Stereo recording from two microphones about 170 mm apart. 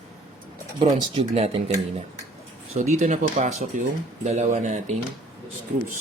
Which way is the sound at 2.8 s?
45° right (ahead or behind).